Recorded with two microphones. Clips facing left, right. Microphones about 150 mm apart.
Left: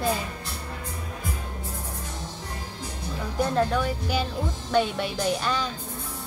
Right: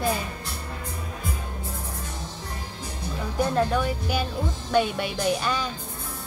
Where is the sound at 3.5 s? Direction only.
10° right (ahead or behind).